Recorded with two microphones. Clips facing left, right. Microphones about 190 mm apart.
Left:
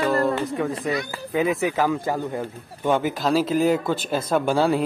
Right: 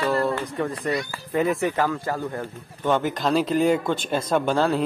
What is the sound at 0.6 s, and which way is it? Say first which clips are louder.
Speech: left 1 dB; centre (ahead or behind).